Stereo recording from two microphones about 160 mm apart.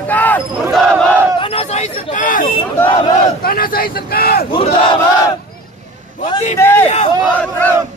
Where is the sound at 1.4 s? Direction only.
40° left (ahead or behind).